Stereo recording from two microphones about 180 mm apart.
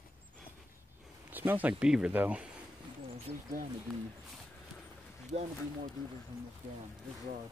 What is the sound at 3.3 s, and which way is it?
Speech, 40° right (ahead or behind).